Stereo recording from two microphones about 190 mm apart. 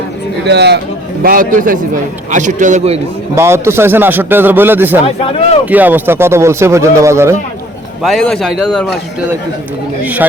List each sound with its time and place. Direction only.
0.4 s a man's voice: 60° right (ahead or behind)
1.2 s a man's voice: 45° right (ahead or behind)
3.3 s speech: 15° right (ahead or behind)
5.0 s speech: 30° left (ahead or behind)
5.6 s speech: 10° right (ahead or behind)
8.0 s a man's voice: centre (ahead or behind)
10.0 s speech: 10° right (ahead or behind)